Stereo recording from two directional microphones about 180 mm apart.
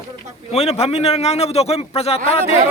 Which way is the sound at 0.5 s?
35° left (ahead or behind).